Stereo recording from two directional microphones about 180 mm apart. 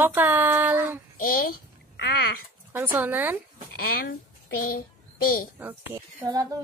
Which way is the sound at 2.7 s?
10° right (ahead or behind).